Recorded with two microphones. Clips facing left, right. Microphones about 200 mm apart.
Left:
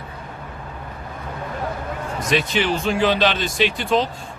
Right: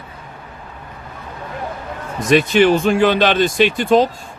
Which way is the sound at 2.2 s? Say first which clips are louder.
Right 9 dB; 50° right (ahead or behind).